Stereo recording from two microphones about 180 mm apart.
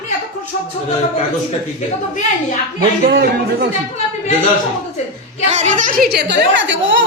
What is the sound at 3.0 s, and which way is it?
Speech, 65° right (ahead or behind).